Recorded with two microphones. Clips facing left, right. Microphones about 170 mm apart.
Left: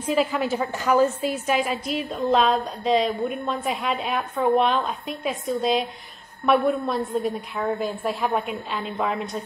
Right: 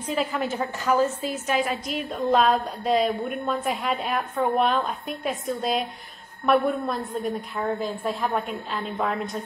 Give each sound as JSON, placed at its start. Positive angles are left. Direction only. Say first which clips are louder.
{"t": 0.1, "sound": "a woman's voice", "louder": "left 4 dB", "side_deg": 5}
{"t": 1.2, "sound": "a woman's voice", "louder": "left 3 dB", "side_deg": 15}
{"t": 1.9, "sound": "a woman's voice", "louder": "left 1 dB", "side_deg": 0}